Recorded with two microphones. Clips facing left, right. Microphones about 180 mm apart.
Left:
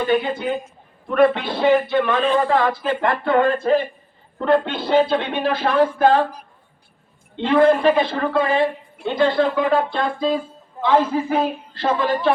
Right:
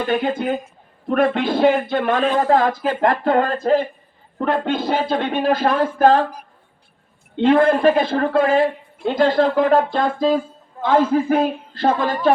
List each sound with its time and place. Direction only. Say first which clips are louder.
0.1 s speech: right 2 dB; 45° right (ahead or behind)
7.4 s speech: right 1 dB; 50° right (ahead or behind)